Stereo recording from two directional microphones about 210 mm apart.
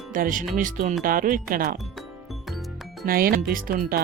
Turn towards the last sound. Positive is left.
turn(degrees=-40)  # may be behind; listen again after turning